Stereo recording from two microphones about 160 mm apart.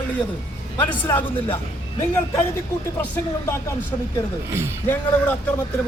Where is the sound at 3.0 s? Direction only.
15° left (ahead or behind).